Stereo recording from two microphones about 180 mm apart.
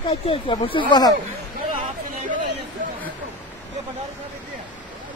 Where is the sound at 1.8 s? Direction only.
45° right (ahead or behind).